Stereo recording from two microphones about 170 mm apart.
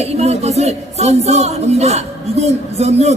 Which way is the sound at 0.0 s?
40° right (ahead or behind).